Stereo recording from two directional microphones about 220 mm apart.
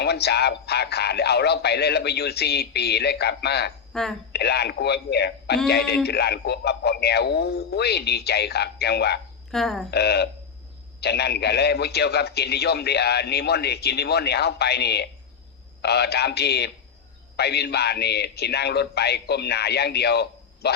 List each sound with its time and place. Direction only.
0.0 s a man's voice: 50° left (ahead or behind)
3.9 s speech: 5° left (ahead or behind)
4.3 s a man's voice: 50° left (ahead or behind)
9.5 s speech: centre (ahead or behind)
9.9 s a man's voice: 50° left (ahead or behind)